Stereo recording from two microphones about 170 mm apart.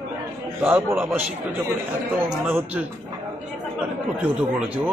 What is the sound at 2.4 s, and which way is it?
Speech, 10° right (ahead or behind).